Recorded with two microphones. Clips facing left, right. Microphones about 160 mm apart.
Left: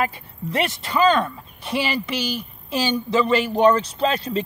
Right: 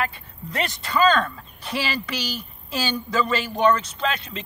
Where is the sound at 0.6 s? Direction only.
10° left (ahead or behind).